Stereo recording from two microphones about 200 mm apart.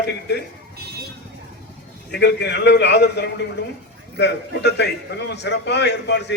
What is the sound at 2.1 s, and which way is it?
A man's voice, 55° left (ahead or behind).